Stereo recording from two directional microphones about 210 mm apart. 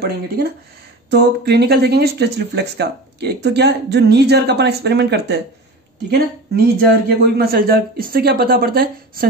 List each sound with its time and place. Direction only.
1.1 s speech: 50° right (ahead or behind)